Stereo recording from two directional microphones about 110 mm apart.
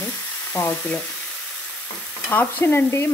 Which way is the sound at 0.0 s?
20° left (ahead or behind).